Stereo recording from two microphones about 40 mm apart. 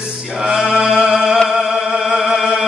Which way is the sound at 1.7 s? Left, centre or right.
Centre.